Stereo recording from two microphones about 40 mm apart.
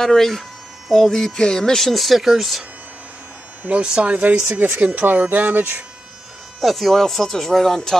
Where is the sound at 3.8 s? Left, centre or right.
Right.